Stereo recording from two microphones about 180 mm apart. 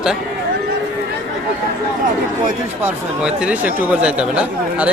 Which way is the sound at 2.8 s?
10° right (ahead or behind).